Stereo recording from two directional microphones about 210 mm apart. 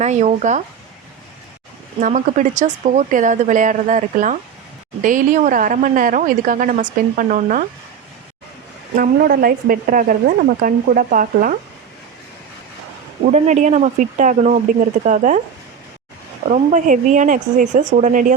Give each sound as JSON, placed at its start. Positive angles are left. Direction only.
{"t": 0.0, "sound": "speech", "side_deg": -35}
{"t": 2.0, "sound": "speech", "side_deg": -40}
{"t": 9.0, "sound": "speech", "side_deg": -45}
{"t": 13.3, "sound": "speech", "side_deg": -35}
{"t": 16.5, "sound": "speech", "side_deg": -35}